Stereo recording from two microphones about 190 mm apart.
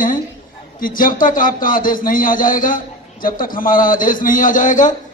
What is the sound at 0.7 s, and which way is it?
A man's voice, 45° left (ahead or behind).